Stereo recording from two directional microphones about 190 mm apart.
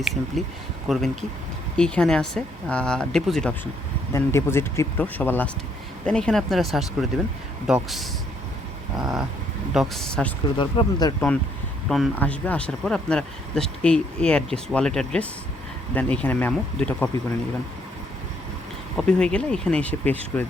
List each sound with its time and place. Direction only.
0.0 s speech: centre (ahead or behind)
4.1 s speech: 15° left (ahead or behind)
10.6 s speech: 25° left (ahead or behind)
11.9 s speech: centre (ahead or behind)
18.9 s speech: 5° left (ahead or behind)